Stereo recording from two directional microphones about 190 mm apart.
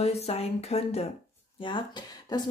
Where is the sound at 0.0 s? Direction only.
35° left (ahead or behind).